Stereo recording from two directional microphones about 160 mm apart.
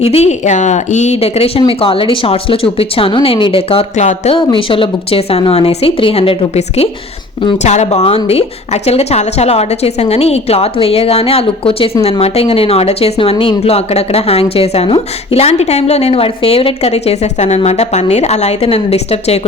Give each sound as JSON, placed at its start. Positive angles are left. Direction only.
{"t": 0.0, "sound": "a woman's voice", "side_deg": 40}
{"t": 4.4, "sound": "a woman's voice", "side_deg": 35}